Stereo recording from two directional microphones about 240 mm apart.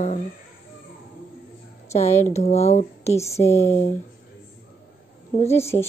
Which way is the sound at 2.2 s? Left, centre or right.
Left.